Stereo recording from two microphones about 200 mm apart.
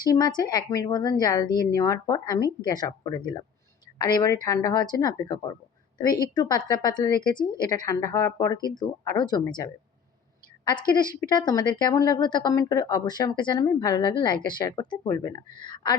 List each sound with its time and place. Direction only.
0.0 s a woman's voice: 20° left (ahead or behind)
10.7 s a woman's voice: 20° left (ahead or behind)